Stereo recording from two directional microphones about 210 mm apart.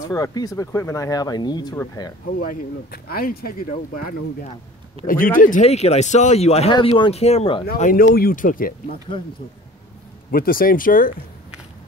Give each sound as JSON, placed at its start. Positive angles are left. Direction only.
{"t": 0.1, "sound": "speech", "side_deg": 15}
{"t": 2.3, "sound": "speech", "side_deg": 45}
{"t": 5.0, "sound": "speech", "side_deg": 40}
{"t": 7.6, "sound": "speech", "side_deg": 45}
{"t": 10.3, "sound": "speech", "side_deg": 45}